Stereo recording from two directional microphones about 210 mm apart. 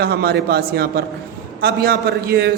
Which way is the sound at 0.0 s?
50° right (ahead or behind).